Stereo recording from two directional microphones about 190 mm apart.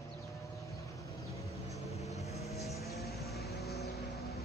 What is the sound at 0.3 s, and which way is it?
Vehicle, 15° left (ahead or behind).